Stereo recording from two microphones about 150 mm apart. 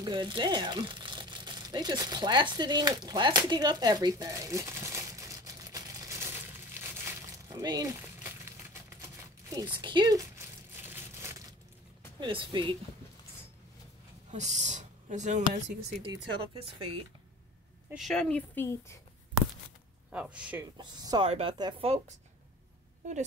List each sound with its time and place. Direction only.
0.0 s crumpling: 30° right (ahead or behind); by 7.0 s 15° right (ahead or behind)
7.4 s a sound: 25° right (ahead or behind)
9.5 s speech: 25° right (ahead or behind)
10.9 s a sound: 15° right (ahead or behind)
12.2 s a woman's voice: 35° right (ahead or behind)
14.3 s speech: 50° right (ahead or behind)
16.0 s a woman's voice: 30° right (ahead or behind)
17.8 s a woman's voice: centre (ahead or behind); by 18.9 s 15° left (ahead or behind)
20.1 s speech: 10° right (ahead or behind)
20.7 s speech: 30° right (ahead or behind)
21.3 s speech: 45° right (ahead or behind)
21.5 s speech: 30° right (ahead or behind)
23.0 s speech: 55° right (ahead or behind)